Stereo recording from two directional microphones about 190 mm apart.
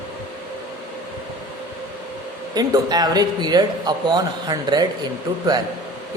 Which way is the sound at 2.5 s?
20° right (ahead or behind).